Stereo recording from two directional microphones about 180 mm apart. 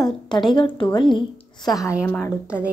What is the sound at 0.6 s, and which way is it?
A child's voice, 25° left (ahead or behind).